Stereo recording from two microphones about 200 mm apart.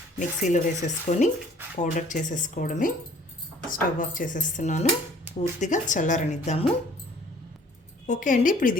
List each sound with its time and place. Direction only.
0.2 s a woman's voice: 40° left (ahead or behind)
8.0 s a woman's voice: 40° left (ahead or behind)